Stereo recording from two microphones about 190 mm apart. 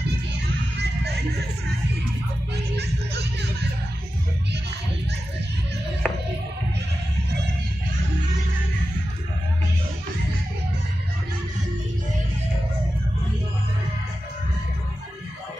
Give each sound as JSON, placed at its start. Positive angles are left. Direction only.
{"t": 2.7, "sound": "music", "side_deg": -60}
{"t": 6.0, "sound": "music", "side_deg": 0}